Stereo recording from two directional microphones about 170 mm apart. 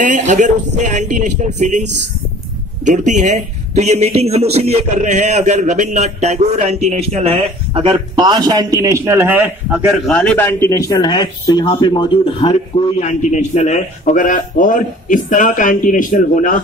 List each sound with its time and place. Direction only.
0.0 s a man's voice: 45° right (ahead or behind); by 10.0 s 10° right (ahead or behind)
10.0 s speech: 5° left (ahead or behind); by 16.5 s 50° left (ahead or behind)